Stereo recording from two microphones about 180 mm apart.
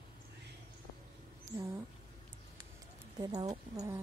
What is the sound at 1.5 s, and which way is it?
Speech, 20° right (ahead or behind).